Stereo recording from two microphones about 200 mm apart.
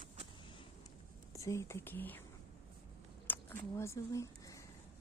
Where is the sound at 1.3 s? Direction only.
15° left (ahead or behind).